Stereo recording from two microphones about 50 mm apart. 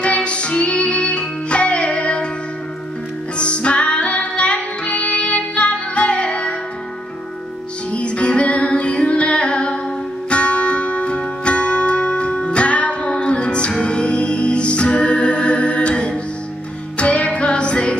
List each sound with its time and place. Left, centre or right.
0.0 s music: left
3.3 s music: left
7.9 s music: left